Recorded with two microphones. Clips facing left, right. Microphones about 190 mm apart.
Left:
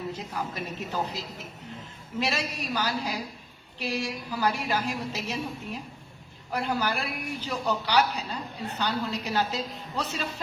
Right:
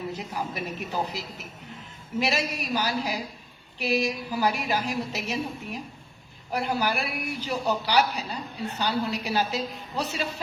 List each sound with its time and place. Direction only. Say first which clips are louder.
0.2 s a woman's voice: right 2 dB; 15° right (ahead or behind)